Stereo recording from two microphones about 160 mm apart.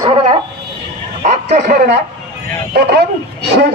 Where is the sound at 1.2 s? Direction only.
45° right (ahead or behind).